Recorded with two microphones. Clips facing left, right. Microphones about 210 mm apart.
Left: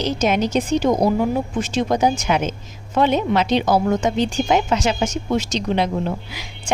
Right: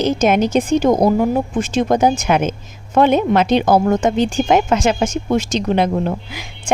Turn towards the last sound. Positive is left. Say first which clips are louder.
# right 3 dB
turn(degrees=-50)  # may be behind; listen again after turning